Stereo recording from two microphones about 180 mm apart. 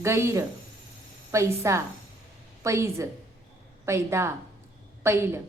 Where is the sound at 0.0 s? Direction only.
15° right (ahead or behind).